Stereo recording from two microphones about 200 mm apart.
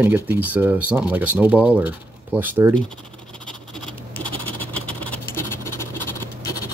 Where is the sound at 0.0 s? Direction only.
10° right (ahead or behind).